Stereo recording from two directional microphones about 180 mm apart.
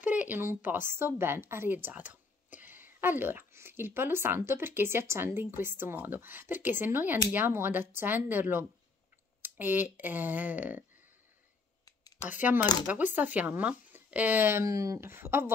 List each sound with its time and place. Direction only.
0.0 s a woman's voice: 10° right (ahead or behind)
12.3 s a woman's voice: 10° right (ahead or behind)